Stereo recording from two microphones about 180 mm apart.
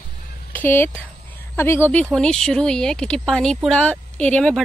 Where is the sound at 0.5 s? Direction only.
10° left (ahead or behind).